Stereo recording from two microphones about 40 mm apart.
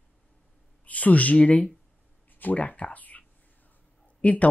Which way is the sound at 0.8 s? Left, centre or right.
Left.